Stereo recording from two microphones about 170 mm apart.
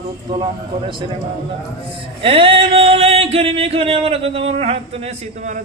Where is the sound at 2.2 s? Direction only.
30° right (ahead or behind).